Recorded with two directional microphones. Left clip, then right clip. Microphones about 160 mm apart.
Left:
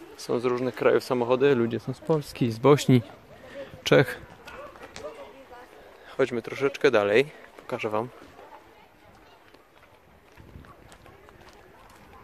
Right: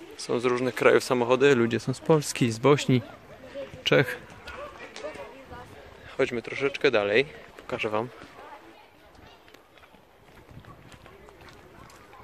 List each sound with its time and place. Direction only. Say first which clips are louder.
0.2 s speech: even; 10° left (ahead or behind); by 2.3 s 10° right (ahead or behind)
2.3 s speech: left 1 dB; 5° left (ahead or behind)
2.7 s a man's voice: left 2 dB; 30° left (ahead or behind)
6.0 s speech: left 1 dB; 25° left (ahead or behind)
7.6 s speech: even; 15° left (ahead or behind)